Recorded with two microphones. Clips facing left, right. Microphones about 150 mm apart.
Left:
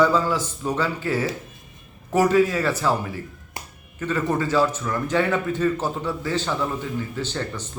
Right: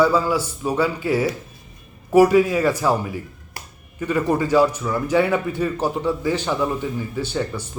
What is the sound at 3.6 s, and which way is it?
Finger snapping, 20° left (ahead or behind).